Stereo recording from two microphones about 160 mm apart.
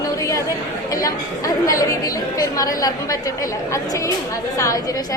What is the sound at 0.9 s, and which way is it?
A woman's voice, 20° left (ahead or behind).